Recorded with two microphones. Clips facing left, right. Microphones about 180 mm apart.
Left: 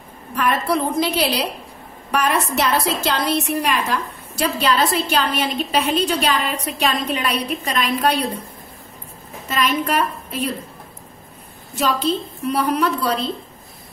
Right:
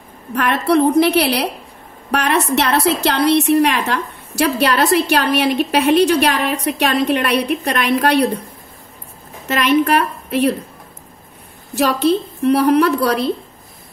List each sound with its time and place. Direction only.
0.3 s a woman's voice: 70° right (ahead or behind)
9.5 s a woman's voice: 70° right (ahead or behind)
11.7 s a woman's voice: 70° right (ahead or behind)